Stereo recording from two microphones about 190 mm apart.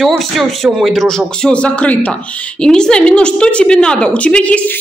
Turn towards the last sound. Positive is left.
turn(degrees=5)  # may be behind; listen again after turning